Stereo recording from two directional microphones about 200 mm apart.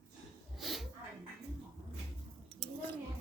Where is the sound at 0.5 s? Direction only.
Centre (ahead or behind).